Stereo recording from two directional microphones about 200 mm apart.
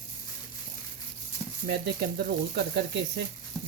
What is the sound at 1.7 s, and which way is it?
Speech, 55° right (ahead or behind).